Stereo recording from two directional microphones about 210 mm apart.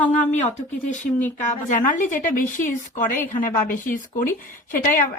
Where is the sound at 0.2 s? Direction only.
35° left (ahead or behind).